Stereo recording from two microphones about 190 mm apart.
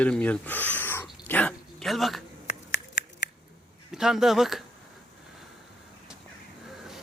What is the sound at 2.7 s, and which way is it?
Finger snapping, 65° left (ahead or behind).